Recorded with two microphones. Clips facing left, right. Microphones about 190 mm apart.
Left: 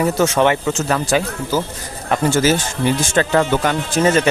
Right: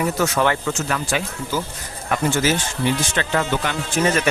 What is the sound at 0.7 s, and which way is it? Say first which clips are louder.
Speech: left 6 dB; 35° left (ahead or behind).